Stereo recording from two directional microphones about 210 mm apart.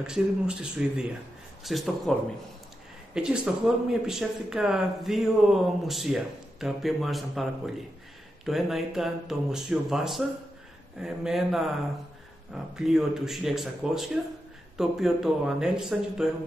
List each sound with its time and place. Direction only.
0.0 s speech: 5° right (ahead or behind)
3.2 s speech: 5° right (ahead or behind)
12.7 s speech: centre (ahead or behind)